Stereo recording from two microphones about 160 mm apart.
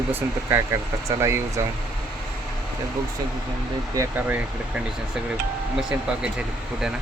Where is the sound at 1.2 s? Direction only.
15° right (ahead or behind).